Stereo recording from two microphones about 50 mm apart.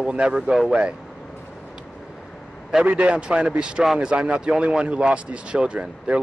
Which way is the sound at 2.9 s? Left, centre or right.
Right.